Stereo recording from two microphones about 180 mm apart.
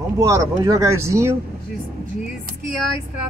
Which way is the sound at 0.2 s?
20° right (ahead or behind).